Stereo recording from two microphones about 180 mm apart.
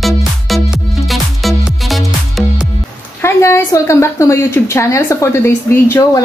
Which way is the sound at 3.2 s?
15° left (ahead or behind).